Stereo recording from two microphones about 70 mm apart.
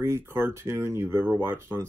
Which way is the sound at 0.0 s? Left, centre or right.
Right.